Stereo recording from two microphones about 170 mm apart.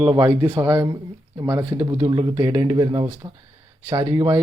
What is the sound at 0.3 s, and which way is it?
Speech, 10° right (ahead or behind).